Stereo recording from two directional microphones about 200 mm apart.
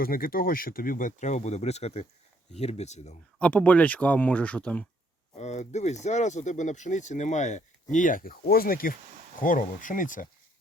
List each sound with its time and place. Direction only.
0.0 s speech: 45° left (ahead or behind)
3.3 s speech: 5° left (ahead or behind)
5.4 s speech: 35° left (ahead or behind)